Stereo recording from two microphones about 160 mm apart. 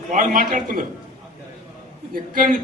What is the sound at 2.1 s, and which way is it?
Speech, 60° right (ahead or behind).